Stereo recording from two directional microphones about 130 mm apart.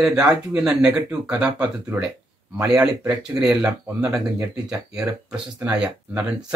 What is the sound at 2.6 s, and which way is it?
Speech, 25° right (ahead or behind).